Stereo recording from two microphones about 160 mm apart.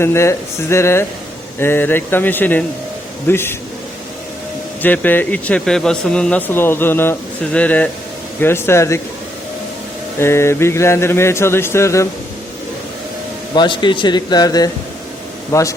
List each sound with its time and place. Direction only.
0.0 s speech: 15° left (ahead or behind)
4.8 s speech: 10° left (ahead or behind)
10.2 s speech: 15° left (ahead or behind)
13.5 s speech: 30° left (ahead or behind)